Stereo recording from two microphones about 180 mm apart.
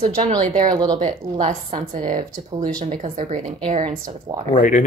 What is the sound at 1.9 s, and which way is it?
Speech, 45° right (ahead or behind).